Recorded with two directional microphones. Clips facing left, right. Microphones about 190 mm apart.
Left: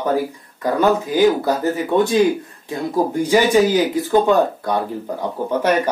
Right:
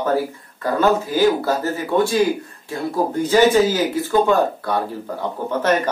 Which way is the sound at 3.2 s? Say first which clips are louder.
Right 1 dB; 15° left (ahead or behind).